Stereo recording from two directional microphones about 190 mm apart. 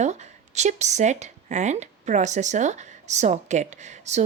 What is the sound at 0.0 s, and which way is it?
Speech, 40° right (ahead or behind).